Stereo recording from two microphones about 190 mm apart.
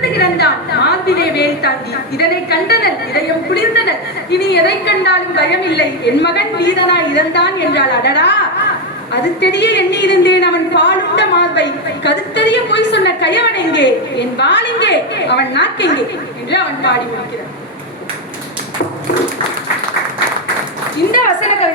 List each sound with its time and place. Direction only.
0.1 s a sound: 60° left (ahead or behind)
1.2 s a woman's voice: 60° left (ahead or behind)
9.4 s a woman's voice: 65° left (ahead or behind)
21.1 s a woman's voice: 45° left (ahead or behind)